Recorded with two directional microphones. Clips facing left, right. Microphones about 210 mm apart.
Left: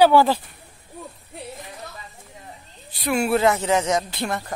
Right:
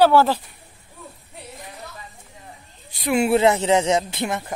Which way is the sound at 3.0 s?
20° right (ahead or behind).